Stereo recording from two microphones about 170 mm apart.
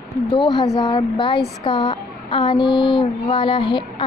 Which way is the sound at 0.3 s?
25° left (ahead or behind).